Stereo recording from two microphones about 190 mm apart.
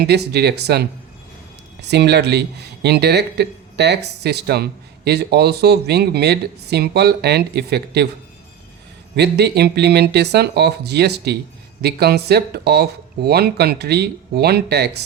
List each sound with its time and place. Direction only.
0.0 s speech: 60° right (ahead or behind)
9.1 s speech: 60° right (ahead or behind)